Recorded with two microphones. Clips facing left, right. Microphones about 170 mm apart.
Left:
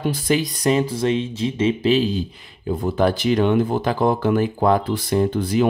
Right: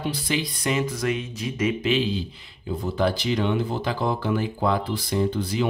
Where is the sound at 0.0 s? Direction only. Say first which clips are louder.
Left 6 dB; 45° left (ahead or behind).